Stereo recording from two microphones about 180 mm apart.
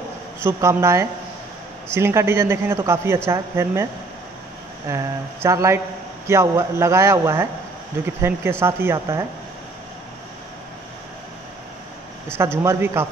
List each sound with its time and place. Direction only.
0.4 s speech: 15° right (ahead or behind)
4.8 s speech: 15° right (ahead or behind)
12.4 s speech: 15° right (ahead or behind)